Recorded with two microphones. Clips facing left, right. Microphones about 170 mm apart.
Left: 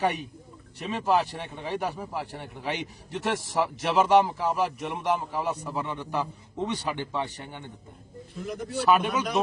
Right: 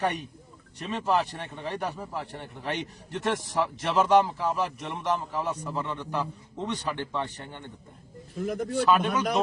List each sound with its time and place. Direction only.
0.8 s a man's voice: 5° left (ahead or behind)
8.4 s speech: 50° right (ahead or behind)
8.9 s speech: 5° left (ahead or behind)